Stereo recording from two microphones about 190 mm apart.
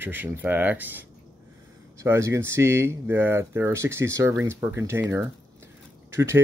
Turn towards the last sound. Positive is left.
turn(degrees=-15)  # may be behind; listen again after turning